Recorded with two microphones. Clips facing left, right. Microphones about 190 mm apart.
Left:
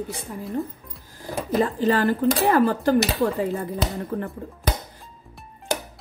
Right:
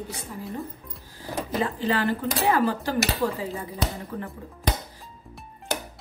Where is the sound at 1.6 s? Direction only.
45° left (ahead or behind).